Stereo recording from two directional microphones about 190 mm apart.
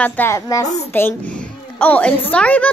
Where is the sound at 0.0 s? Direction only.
10° left (ahead or behind).